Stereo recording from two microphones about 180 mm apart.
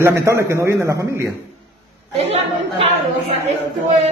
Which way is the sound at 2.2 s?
35° right (ahead or behind).